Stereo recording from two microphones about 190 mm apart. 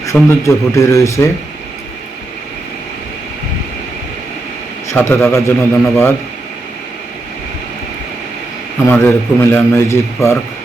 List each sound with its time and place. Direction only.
0.0 s a man's voice: 15° left (ahead or behind)
4.9 s a man's voice: 10° left (ahead or behind)
8.8 s a man's voice: 15° left (ahead or behind)